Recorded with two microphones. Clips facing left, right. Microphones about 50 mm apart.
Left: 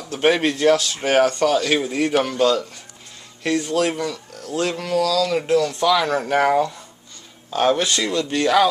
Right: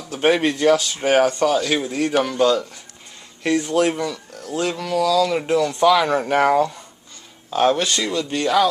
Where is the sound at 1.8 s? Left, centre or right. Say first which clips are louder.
Left 1 dB; centre.